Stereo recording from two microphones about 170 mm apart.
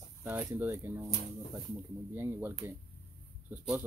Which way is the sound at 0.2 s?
10° right (ahead or behind).